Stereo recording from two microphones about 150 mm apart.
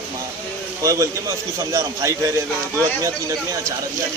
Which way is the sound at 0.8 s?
20° right (ahead or behind).